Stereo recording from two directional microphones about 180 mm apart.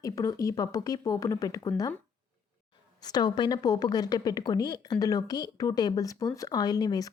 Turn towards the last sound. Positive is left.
turn(degrees=20)  # may be behind; listen again after turning